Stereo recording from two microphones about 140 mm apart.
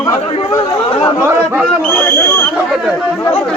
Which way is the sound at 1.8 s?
10° left (ahead or behind).